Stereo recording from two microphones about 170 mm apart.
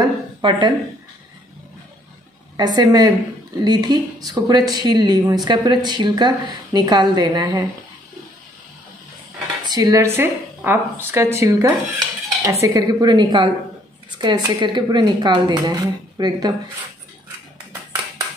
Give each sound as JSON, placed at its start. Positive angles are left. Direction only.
{"t": 0.0, "sound": "a sound", "side_deg": -30}
{"t": 2.5, "sound": "speech", "side_deg": -25}
{"t": 9.7, "sound": "a woman's voice", "side_deg": -20}